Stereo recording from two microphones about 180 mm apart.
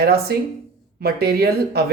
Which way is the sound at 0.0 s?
60° right (ahead or behind).